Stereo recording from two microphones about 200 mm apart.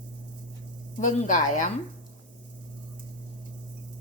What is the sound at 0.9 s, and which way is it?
Speech, 40° left (ahead or behind).